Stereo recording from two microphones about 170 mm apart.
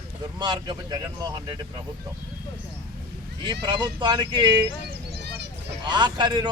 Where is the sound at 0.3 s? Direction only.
25° right (ahead or behind).